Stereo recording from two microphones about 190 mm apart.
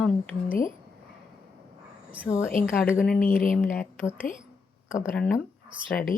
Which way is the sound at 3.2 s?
45° left (ahead or behind).